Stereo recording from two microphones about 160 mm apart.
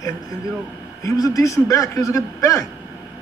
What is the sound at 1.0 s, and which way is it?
A man's voice, 20° left (ahead or behind).